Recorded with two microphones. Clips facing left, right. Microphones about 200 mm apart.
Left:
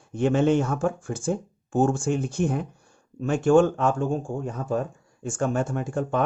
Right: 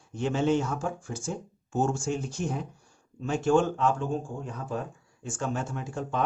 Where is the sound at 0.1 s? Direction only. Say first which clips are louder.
Left 5 dB; 55° left (ahead or behind).